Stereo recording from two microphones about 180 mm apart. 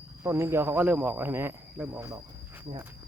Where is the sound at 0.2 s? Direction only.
15° right (ahead or behind).